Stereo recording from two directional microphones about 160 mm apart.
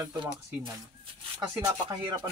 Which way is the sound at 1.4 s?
20° right (ahead or behind).